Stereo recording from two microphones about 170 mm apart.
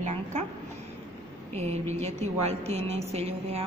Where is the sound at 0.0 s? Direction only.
40° right (ahead or behind).